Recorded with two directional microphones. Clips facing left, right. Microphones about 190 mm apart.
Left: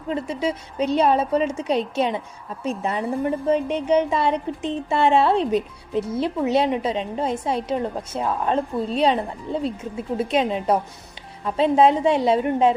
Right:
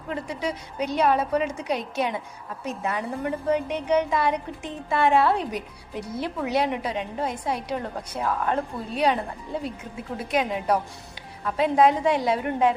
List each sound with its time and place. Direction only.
0.1 s a woman's voice: 25° left (ahead or behind)